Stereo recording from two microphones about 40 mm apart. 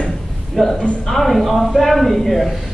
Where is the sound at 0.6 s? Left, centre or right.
Centre.